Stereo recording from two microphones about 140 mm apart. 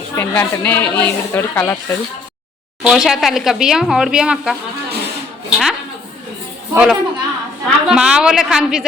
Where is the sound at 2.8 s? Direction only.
Centre (ahead or behind).